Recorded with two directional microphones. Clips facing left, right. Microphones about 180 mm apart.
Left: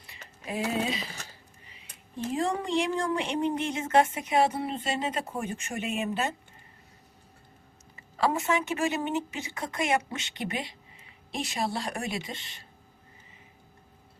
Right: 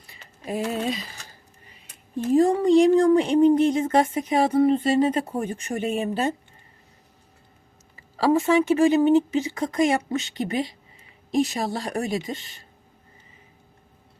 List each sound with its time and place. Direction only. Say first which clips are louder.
0.4 s speech: right 4 dB; 45° right (ahead or behind)
2.3 s speech: right 11 dB; 40° right (ahead or behind)
8.2 s speech: right 8 dB; 35° right (ahead or behind)